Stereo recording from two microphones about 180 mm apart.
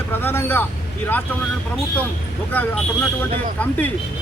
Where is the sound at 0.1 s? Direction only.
10° left (ahead or behind).